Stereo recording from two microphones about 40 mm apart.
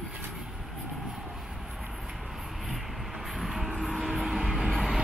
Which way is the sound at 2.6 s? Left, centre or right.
Centre.